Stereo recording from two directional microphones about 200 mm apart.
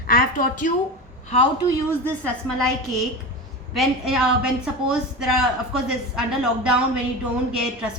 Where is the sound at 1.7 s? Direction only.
10° left (ahead or behind).